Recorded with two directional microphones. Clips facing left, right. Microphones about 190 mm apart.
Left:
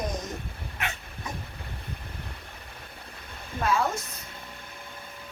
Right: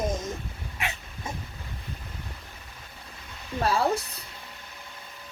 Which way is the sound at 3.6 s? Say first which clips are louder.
Right 2 dB; 35° right (ahead or behind).